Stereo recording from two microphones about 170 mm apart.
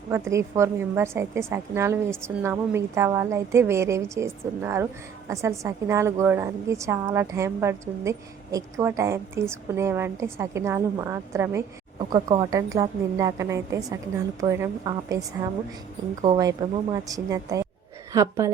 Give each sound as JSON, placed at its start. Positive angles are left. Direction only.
{"t": 0.1, "sound": "a woman's voice", "side_deg": -15}
{"t": 16.2, "sound": "a woman's voice", "side_deg": -25}